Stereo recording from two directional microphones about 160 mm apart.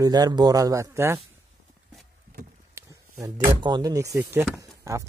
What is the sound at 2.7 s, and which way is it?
Speech, 20° right (ahead or behind).